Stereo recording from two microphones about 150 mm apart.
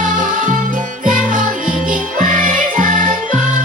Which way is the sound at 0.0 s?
60° right (ahead or behind).